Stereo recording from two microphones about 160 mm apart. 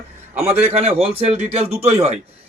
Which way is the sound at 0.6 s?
40° right (ahead or behind).